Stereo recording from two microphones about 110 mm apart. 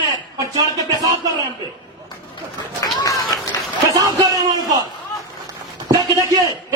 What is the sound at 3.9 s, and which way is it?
Music, 35° right (ahead or behind).